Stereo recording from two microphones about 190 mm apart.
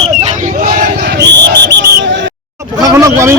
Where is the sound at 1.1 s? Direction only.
65° right (ahead or behind).